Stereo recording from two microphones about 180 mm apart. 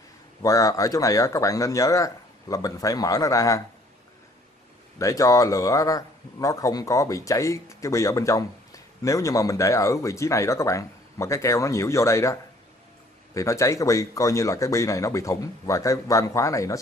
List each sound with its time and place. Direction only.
0.4 s speech: 20° left (ahead or behind)
4.9 s a man's voice: 20° left (ahead or behind)